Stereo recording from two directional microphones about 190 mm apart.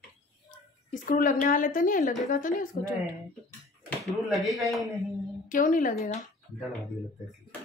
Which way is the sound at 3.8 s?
Centre (ahead or behind).